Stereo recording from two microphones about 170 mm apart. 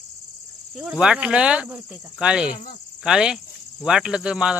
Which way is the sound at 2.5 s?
55° left (ahead or behind).